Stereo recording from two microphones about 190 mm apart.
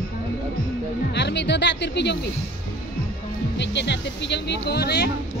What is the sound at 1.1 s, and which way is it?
Speech, 65° left (ahead or behind).